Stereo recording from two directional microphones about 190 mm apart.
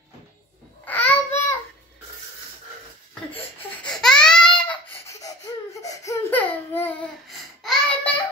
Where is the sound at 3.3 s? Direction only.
5° left (ahead or behind).